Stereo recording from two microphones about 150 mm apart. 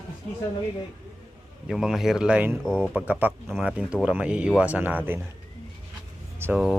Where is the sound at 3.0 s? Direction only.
10° right (ahead or behind).